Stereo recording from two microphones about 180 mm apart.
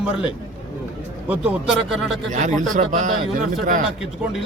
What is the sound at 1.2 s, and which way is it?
Speech, 5° right (ahead or behind).